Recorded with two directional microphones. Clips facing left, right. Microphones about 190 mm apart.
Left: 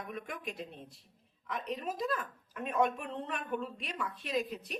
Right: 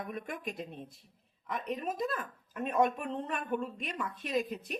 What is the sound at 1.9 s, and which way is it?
Speech, 50° right (ahead or behind).